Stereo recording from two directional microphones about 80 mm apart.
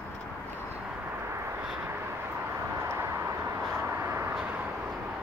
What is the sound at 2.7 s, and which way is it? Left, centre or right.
Vehicle, right.